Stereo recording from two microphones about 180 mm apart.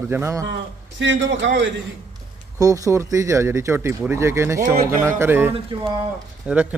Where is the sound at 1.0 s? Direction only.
90° right.